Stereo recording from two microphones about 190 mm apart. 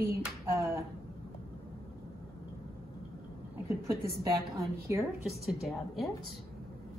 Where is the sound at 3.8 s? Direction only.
15° right (ahead or behind).